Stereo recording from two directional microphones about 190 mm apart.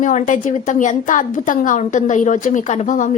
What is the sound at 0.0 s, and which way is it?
A woman's voice, 40° left (ahead or behind).